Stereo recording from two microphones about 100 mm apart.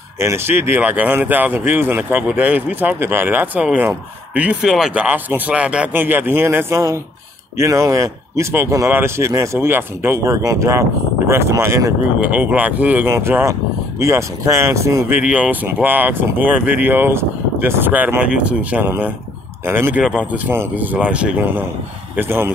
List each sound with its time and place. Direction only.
0.2 s speech: 25° right (ahead or behind); by 5.0 s 5° right (ahead or behind)
5.0 s speech: 20° right (ahead or behind)
12.2 s speech: 15° right (ahead or behind); by 15.1 s 30° right (ahead or behind)
15.1 s speech: 15° right (ahead or behind)
20.0 s speech: 10° right (ahead or behind)